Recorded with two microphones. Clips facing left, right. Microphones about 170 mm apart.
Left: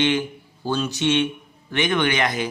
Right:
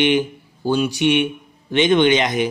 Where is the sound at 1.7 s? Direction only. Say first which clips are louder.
Right 7 dB; 20° right (ahead or behind).